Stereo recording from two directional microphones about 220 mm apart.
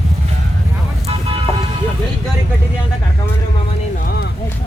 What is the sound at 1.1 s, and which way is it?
Vehicle, 25° right (ahead or behind).